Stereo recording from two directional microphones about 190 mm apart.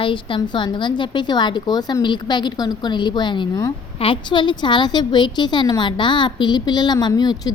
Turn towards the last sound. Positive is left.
turn(degrees=20)  # may be behind; listen again after turning